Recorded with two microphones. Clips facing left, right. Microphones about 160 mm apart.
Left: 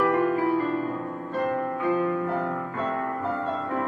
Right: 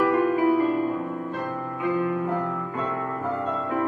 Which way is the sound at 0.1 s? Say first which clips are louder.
Right 2 dB; 15° right (ahead or behind).